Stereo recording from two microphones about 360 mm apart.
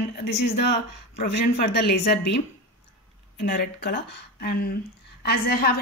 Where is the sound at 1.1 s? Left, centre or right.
Left.